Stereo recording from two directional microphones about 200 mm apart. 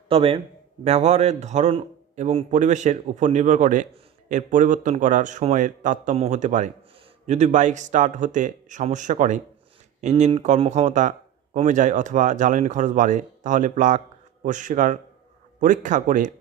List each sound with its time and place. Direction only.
0.1 s a man's voice: 30° right (ahead or behind)